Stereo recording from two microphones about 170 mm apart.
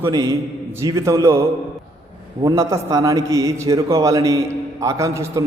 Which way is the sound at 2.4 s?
15° right (ahead or behind).